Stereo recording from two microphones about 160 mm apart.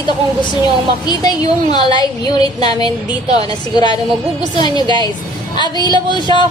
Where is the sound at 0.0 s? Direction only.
25° left (ahead or behind).